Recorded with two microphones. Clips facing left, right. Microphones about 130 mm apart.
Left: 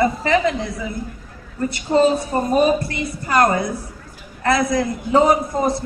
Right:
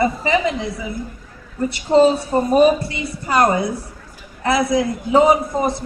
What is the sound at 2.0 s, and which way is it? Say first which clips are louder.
A woman's voice: right 2 dB; 20° right (ahead or behind).